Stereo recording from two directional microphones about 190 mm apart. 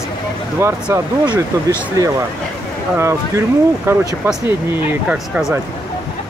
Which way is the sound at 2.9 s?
15° right (ahead or behind).